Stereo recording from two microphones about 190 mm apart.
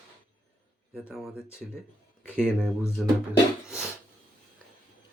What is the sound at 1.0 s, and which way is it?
Speech, centre (ahead or behind).